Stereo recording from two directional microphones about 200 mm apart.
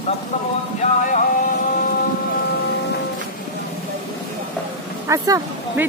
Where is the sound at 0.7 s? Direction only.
40° left (ahead or behind).